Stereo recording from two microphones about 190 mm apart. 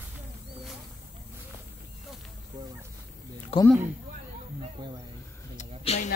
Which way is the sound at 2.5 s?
20° right (ahead or behind).